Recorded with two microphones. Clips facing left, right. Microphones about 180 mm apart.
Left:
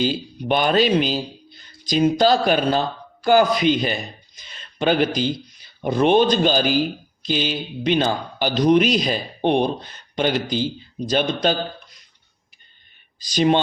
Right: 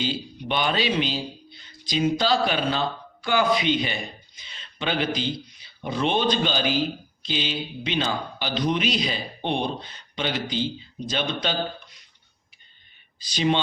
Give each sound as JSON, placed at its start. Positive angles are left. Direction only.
{"t": 0.0, "sound": "a man's voice", "side_deg": 45}
{"t": 4.4, "sound": "a sound", "side_deg": 45}
{"t": 5.1, "sound": "a man's voice", "side_deg": 45}
{"t": 13.1, "sound": "speech", "side_deg": 45}